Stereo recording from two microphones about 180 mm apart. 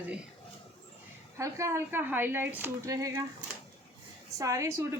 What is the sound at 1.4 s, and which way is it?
Speech, 15° right (ahead or behind).